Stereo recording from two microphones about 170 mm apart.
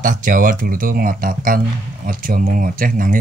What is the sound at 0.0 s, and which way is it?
Speech, 50° right (ahead or behind).